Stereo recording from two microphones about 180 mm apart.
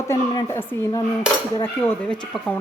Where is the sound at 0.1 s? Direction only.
15° left (ahead or behind).